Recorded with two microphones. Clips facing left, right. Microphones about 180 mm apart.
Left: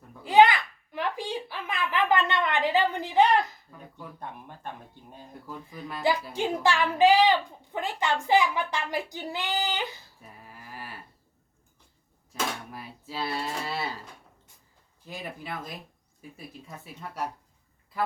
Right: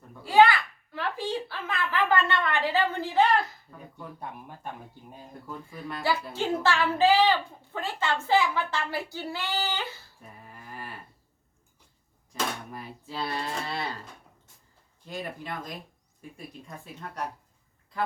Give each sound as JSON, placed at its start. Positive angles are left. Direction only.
{"t": 0.2, "sound": "a sound", "side_deg": 20}
{"t": 4.2, "sound": "speech", "side_deg": -10}
{"t": 6.3, "sound": "a woman's voice", "side_deg": 15}
{"t": 10.4, "sound": "cattle", "side_deg": 5}
{"t": 12.3, "sound": "a woman's voice", "side_deg": 5}